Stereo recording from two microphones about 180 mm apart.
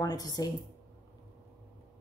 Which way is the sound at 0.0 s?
20° left (ahead or behind).